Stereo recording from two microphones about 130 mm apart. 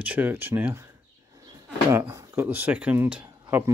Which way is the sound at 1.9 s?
20° right (ahead or behind).